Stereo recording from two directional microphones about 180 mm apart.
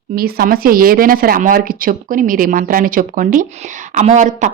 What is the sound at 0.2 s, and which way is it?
Speech, 55° right (ahead or behind).